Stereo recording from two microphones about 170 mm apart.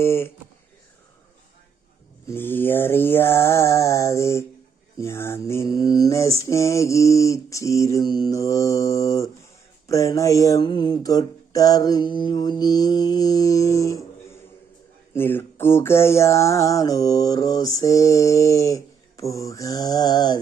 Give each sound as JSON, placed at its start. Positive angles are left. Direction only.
{"t": 0.0, "sound": "mantra", "side_deg": 15}
{"t": 2.2, "sound": "mantra", "side_deg": 15}
{"t": 4.9, "sound": "a sound", "side_deg": 15}